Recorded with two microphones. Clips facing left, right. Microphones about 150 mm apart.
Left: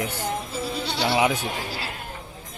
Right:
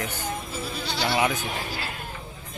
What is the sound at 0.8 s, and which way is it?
Goat, 30° left (ahead or behind).